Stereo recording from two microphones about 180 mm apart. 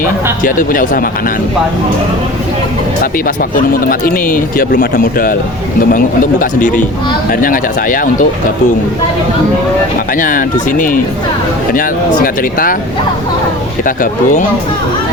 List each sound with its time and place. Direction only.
0.0 s speech: 50° left (ahead or behind)
3.0 s speech: 50° left (ahead or behind)
6.4 s speech: 45° left (ahead or behind)
10.2 s speech: 50° left (ahead or behind)
13.8 s speech: 50° left (ahead or behind)